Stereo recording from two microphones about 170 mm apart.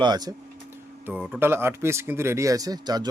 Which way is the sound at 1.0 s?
10° right (ahead or behind).